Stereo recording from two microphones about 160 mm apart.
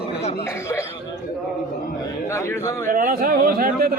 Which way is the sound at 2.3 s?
15° left (ahead or behind).